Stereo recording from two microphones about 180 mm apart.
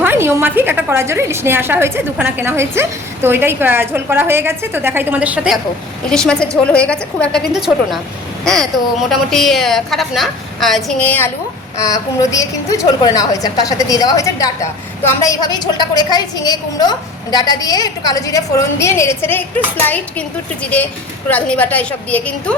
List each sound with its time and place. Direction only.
0.0 s a woman's voice: 10° right (ahead or behind)
6.1 s a woman's voice: 5° left (ahead or behind)
9.0 s a woman's voice: centre (ahead or behind)